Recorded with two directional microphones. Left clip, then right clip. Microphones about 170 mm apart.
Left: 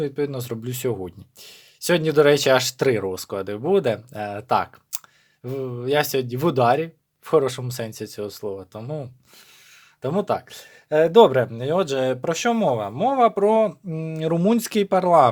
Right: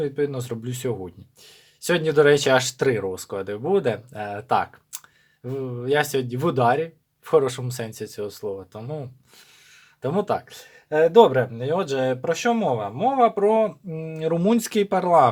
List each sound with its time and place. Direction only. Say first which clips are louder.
0.0 s speech: right 1 dB; 30° left (ahead or behind)
10.5 s speech: left 3 dB; 45° left (ahead or behind)
14.4 s speech: even; 25° left (ahead or behind)